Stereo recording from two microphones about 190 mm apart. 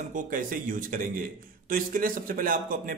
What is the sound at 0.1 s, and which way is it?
A man's voice, 45° right (ahead or behind).